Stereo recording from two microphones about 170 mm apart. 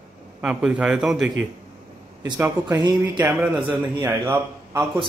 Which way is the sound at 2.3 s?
20° right (ahead or behind).